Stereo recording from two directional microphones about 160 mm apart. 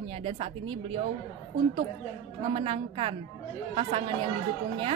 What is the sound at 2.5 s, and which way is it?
Speech, 35° right (ahead or behind).